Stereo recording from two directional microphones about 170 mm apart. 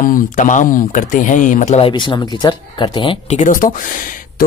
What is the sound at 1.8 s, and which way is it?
Speech, 25° left (ahead or behind).